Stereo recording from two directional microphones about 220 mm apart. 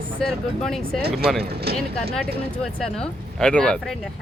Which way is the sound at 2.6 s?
5° left (ahead or behind).